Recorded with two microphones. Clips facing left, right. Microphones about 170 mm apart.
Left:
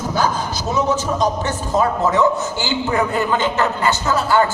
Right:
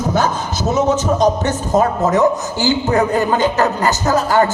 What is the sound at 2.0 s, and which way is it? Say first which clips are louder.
Speech: right 2 dB; 40° right (ahead or behind).